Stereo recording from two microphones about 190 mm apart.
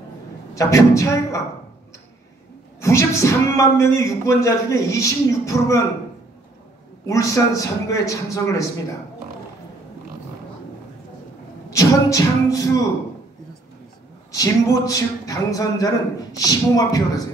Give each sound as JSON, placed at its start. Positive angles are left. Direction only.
{"t": 0.6, "sound": "speech", "side_deg": 15}
{"t": 2.8, "sound": "speech", "side_deg": 15}
{"t": 7.1, "sound": "speech", "side_deg": 15}
{"t": 11.7, "sound": "speech", "side_deg": 15}
{"t": 14.3, "sound": "speech", "side_deg": 20}